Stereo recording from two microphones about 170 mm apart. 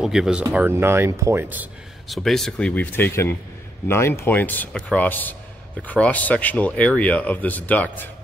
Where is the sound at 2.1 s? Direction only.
Centre (ahead or behind).